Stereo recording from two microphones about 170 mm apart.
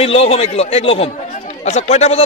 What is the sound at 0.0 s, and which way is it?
Speech, 35° left (ahead or behind).